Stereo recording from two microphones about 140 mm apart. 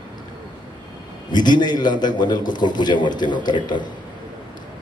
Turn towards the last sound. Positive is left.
turn(degrees=30)  # may be behind; listen again after turning